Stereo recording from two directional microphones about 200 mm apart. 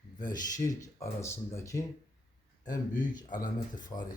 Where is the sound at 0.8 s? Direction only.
15° left (ahead or behind).